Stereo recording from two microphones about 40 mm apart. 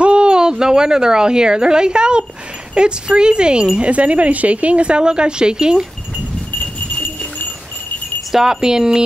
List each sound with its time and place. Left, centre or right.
0.0 s a woman's voice: right
8.3 s speech: centre